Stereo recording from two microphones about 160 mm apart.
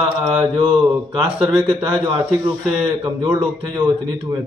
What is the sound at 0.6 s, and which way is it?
A man's voice, 10° right (ahead or behind).